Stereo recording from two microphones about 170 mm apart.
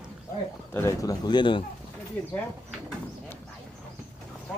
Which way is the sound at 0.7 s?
15° left (ahead or behind).